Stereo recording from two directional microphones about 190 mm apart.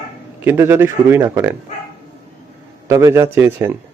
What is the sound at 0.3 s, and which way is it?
A man's voice, 10° right (ahead or behind).